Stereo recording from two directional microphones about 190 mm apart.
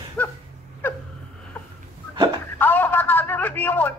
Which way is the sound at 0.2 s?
10° left (ahead or behind).